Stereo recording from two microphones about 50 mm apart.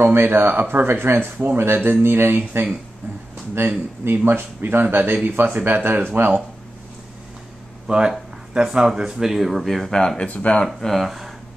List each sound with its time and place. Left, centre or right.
0.0 s speech: right
7.8 s speech: centre
9.8 s speech: centre
10.2 s speech: left
10.8 s speech: centre